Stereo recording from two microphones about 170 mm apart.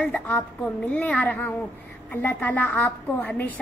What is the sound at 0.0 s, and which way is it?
A child's voice, 10° left (ahead or behind).